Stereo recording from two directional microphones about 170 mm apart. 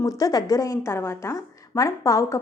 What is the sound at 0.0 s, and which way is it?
A woman's voice, 20° left (ahead or behind).